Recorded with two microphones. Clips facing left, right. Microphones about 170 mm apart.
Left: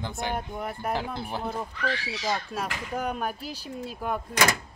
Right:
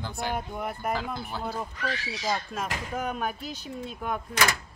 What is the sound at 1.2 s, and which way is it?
Speech, 25° left (ahead or behind).